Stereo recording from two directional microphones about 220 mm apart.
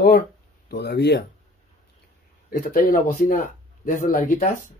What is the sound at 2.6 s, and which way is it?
Speech, 40° left (ahead or behind).